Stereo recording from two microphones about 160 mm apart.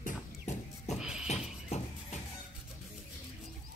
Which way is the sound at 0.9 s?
5° right (ahead or behind).